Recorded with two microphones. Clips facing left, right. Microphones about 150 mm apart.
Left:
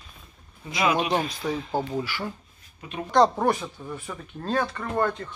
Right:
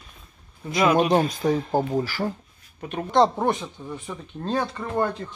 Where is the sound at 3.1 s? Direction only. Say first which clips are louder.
Even; 25° right (ahead or behind).